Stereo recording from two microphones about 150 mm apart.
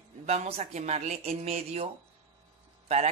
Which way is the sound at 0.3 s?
50° right (ahead or behind).